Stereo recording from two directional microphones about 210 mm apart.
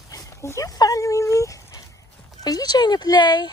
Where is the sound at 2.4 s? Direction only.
20° left (ahead or behind).